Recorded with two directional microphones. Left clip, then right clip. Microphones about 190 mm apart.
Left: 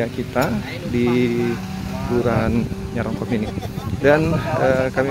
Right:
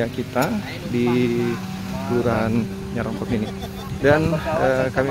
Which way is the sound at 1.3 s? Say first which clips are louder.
Left 1 dB; 55° right (ahead or behind).